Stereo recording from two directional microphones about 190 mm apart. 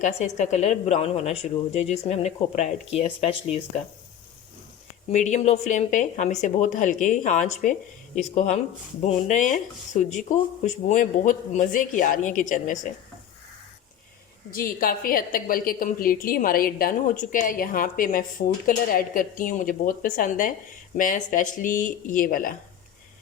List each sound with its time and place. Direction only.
0.0 s a woman's voice: 40° left (ahead or behind)
5.1 s a woman's voice: 40° left (ahead or behind)
14.5 s a woman's voice: 50° left (ahead or behind)